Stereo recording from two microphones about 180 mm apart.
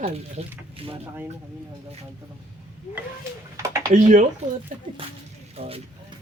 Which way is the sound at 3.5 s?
15° right (ahead or behind).